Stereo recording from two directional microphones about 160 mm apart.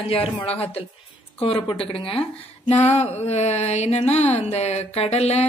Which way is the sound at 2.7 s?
40° left (ahead or behind).